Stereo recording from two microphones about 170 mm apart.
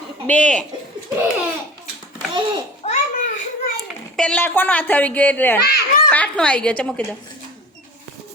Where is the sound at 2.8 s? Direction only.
45° left (ahead or behind).